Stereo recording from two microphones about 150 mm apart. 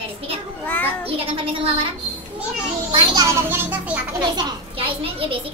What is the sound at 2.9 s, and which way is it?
Speech, 30° right (ahead or behind).